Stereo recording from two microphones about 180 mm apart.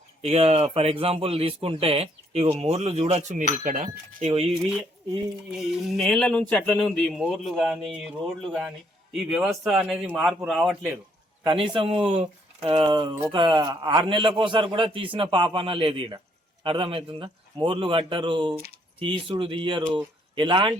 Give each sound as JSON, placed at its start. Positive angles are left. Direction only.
{"t": 0.2, "sound": "speech", "side_deg": -35}
{"t": 5.5, "sound": "speech", "side_deg": 0}
{"t": 11.4, "sound": "speech", "side_deg": -25}